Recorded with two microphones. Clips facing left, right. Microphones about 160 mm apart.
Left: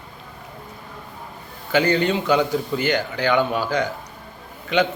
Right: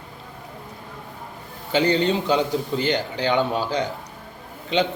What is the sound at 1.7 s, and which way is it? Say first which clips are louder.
A man's voice: left 1 dB; 25° right (ahead or behind).